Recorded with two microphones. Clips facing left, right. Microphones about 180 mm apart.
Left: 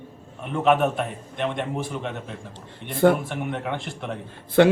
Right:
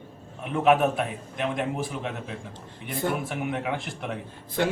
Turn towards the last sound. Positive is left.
turn(degrees=75)  # may be behind; listen again after turning